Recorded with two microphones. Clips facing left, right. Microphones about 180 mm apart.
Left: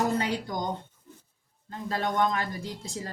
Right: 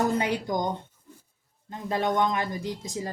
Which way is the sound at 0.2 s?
20° right (ahead or behind).